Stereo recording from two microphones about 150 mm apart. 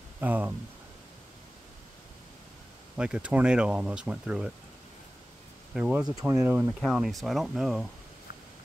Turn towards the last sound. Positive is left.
turn(degrees=0)  # may be behind; listen again after turning